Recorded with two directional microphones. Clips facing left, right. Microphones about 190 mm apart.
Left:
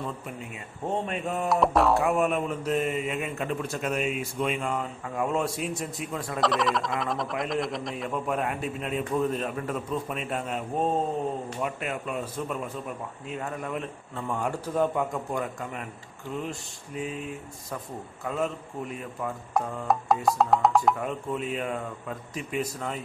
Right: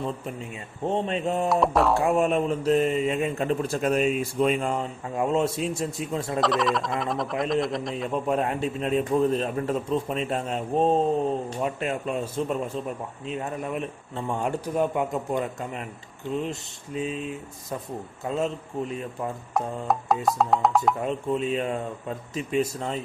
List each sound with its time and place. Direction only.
0.8 s speech: 25° right (ahead or behind)
1.5 s speech: centre (ahead or behind)
2.0 s speech: 25° right (ahead or behind)
6.4 s speech: centre (ahead or behind)
7.9 s speech: 25° right (ahead or behind)
18.2 s speech: 25° right (ahead or behind)
19.5 s speech: centre (ahead or behind)
21.0 s speech: 25° right (ahead or behind)